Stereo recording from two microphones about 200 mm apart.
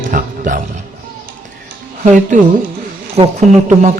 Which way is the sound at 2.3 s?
40° right (ahead or behind).